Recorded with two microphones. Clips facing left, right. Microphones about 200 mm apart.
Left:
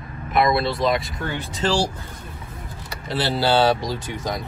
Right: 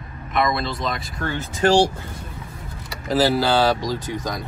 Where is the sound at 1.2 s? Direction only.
15° left (ahead or behind).